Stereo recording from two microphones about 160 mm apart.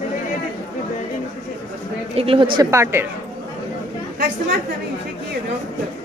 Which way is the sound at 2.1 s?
35° right (ahead or behind).